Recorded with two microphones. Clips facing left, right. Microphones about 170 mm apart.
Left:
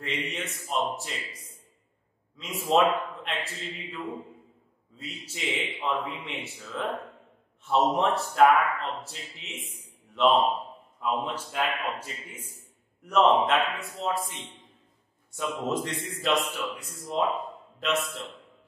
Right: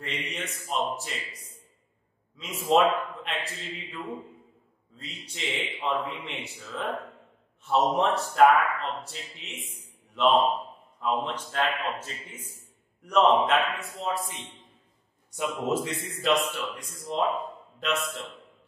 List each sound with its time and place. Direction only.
0.0 s a man's voice: centre (ahead or behind)
15.3 s a man's voice: 5° right (ahead or behind)